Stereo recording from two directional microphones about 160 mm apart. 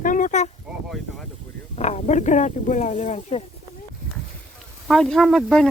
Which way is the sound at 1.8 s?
45° left (ahead or behind).